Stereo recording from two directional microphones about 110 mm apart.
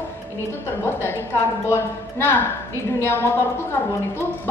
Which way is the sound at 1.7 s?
20° left (ahead or behind).